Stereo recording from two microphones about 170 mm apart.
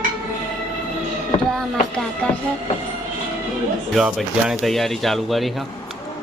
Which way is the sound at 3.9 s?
Centre (ahead or behind).